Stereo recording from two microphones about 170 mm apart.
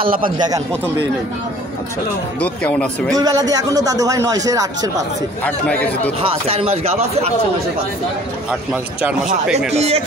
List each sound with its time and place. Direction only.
0.0 s speech: 55° right (ahead or behind)
2.4 s speech: 5° left (ahead or behind)
3.2 s speech: 20° right (ahead or behind)
5.4 s speech: 10° left (ahead or behind)
6.1 s speech: 35° right (ahead or behind)
8.5 s a man's voice: 5° right (ahead or behind)
9.8 s speech: 35° right (ahead or behind)